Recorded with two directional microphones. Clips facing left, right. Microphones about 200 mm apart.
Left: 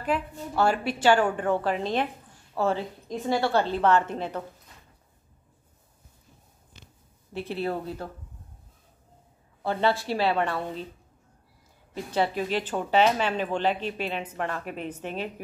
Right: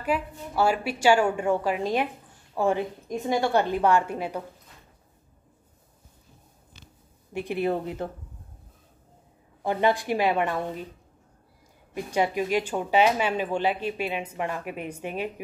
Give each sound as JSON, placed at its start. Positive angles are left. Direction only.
{"t": 0.0, "sound": "speech", "side_deg": -10}
{"t": 7.3, "sound": "speech", "side_deg": -15}
{"t": 9.6, "sound": "speech", "side_deg": -15}
{"t": 11.9, "sound": "speech", "side_deg": -15}